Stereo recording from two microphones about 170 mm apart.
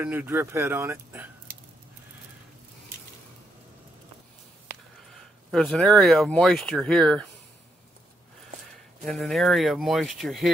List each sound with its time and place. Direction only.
0.0 s speech: 10° right (ahead or behind)
5.5 s speech: centre (ahead or behind)
9.0 s speech: centre (ahead or behind)